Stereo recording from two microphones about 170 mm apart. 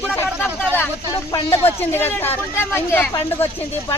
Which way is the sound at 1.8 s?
10° left (ahead or behind).